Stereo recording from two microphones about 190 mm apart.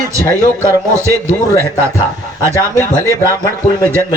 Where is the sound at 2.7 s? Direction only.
15° left (ahead or behind).